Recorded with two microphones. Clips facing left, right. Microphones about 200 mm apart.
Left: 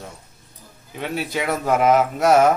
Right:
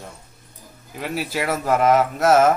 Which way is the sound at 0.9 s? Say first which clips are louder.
Even; centre (ahead or behind).